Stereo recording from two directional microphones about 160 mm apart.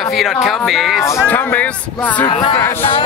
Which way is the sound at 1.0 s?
15° left (ahead or behind).